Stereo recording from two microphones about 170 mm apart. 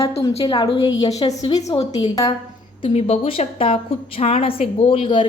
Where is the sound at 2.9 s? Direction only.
35° left (ahead or behind).